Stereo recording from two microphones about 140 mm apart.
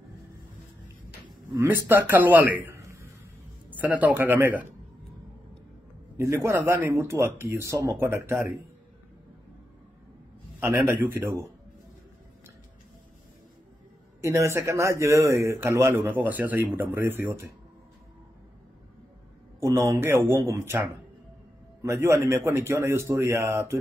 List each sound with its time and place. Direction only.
1.5 s a man's voice: 15° right (ahead or behind)
6.1 s speech: 20° right (ahead or behind)
11.1 s speech: 15° right (ahead or behind)
14.2 s speech: 20° right (ahead or behind)
19.6 s speech: 20° right (ahead or behind)
21.8 s speech: 20° right (ahead or behind)